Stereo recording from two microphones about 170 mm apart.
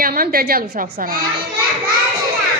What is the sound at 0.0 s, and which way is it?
A woman's voice, 60° right (ahead or behind).